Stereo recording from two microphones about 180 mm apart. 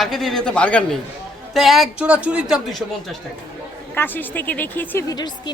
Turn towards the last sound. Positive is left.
turn(degrees=10)  # may be behind; listen again after turning